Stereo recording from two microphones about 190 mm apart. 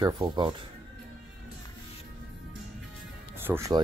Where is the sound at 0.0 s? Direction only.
25° right (ahead or behind).